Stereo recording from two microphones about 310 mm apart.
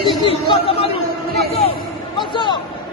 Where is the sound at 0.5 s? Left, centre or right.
Centre.